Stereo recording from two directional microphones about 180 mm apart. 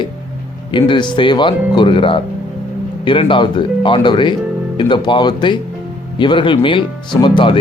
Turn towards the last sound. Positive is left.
turn(degrees=30)  # may be behind; listen again after turning